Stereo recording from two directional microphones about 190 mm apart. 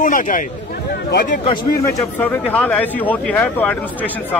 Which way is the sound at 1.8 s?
10° left (ahead or behind).